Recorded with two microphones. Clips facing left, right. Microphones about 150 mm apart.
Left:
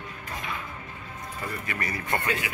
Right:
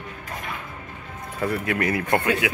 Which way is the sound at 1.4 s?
75° right (ahead or behind).